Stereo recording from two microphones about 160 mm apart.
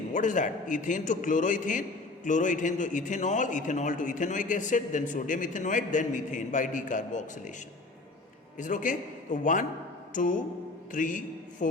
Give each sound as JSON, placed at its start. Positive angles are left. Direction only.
{"t": 0.1, "sound": "a man's voice", "side_deg": 50}
{"t": 8.5, "sound": "a man's voice", "side_deg": 50}
{"t": 10.1, "sound": "music", "side_deg": 55}
{"t": 10.9, "sound": "a man's voice", "side_deg": 55}